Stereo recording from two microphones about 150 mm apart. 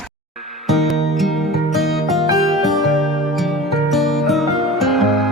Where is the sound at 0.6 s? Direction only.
Centre (ahead or behind).